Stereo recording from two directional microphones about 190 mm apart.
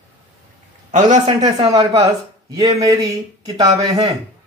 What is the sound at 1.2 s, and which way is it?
Speech, 25° right (ahead or behind).